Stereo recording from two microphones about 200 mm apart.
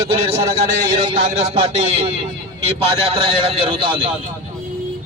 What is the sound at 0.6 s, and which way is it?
A man's voice, 30° right (ahead or behind).